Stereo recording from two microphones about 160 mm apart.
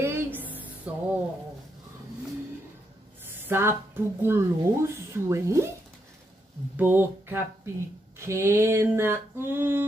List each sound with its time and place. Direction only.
0.0 s a sound: 15° right (ahead or behind)
0.9 s speech: 10° right (ahead or behind)
3.4 s speech: 15° right (ahead or behind)
6.8 s speech: 10° right (ahead or behind)